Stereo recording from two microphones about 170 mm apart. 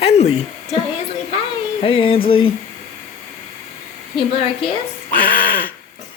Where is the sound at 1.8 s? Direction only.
30° left (ahead or behind).